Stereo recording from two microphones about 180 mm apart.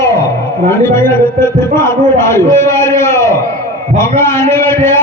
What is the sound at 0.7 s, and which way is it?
A man's voice, 15° left (ahead or behind).